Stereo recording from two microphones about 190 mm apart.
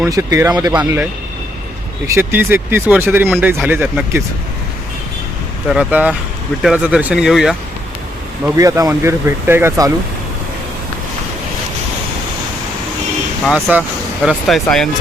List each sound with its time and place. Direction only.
0.0 s speech: 15° right (ahead or behind)
2.0 s speech: 10° right (ahead or behind)
5.6 s speech: 5° right (ahead or behind)
8.4 s speech: 15° right (ahead or behind)
13.4 s speech: 5° right (ahead or behind)